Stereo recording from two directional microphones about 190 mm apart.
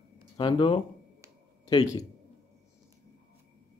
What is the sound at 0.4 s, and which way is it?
Speech, 25° left (ahead or behind).